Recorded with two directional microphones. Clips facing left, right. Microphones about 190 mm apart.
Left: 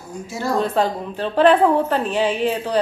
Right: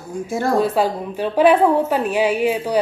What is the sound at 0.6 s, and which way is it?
Speech, 10° right (ahead or behind).